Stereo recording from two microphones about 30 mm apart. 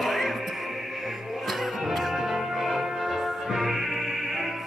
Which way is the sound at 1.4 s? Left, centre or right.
Centre.